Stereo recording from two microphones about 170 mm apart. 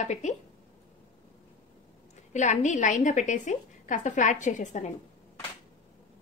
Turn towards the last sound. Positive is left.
turn(degrees=45)  # may be behind; listen again after turning